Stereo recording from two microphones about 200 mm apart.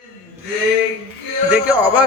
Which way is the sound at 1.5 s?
5° right (ahead or behind).